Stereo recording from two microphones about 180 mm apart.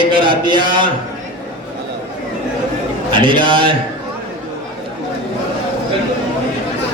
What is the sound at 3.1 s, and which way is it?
Speech, 25° right (ahead or behind).